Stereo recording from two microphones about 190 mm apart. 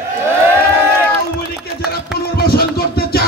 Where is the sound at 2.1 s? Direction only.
55° left (ahead or behind).